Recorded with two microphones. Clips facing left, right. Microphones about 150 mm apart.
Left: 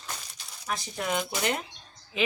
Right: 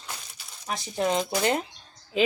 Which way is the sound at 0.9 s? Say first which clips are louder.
Right 7 dB; 30° right (ahead or behind).